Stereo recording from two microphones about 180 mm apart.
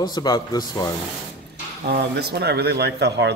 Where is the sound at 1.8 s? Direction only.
65° right (ahead or behind).